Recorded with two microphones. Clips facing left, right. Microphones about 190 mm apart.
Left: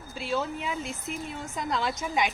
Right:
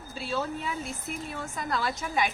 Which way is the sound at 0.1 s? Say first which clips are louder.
Left 1 dB; 15° left (ahead or behind).